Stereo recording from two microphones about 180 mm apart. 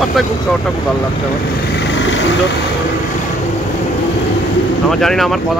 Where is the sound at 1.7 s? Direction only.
85° left.